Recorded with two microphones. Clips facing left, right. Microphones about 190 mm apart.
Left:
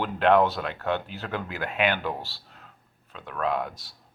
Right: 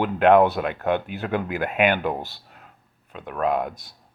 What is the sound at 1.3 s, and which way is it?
Speech, 50° right (ahead or behind).